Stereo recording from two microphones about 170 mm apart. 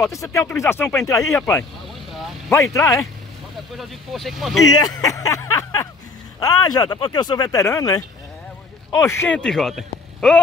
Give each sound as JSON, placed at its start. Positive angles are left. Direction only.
{"t": 0.0, "sound": "speech", "side_deg": 20}
{"t": 3.7, "sound": "a man's voice", "side_deg": 0}
{"t": 4.6, "sound": "speech", "side_deg": 20}
{"t": 9.0, "sound": "a man's voice", "side_deg": 15}